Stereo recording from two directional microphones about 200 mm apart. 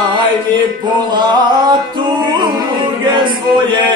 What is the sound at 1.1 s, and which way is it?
Music, 20° right (ahead or behind).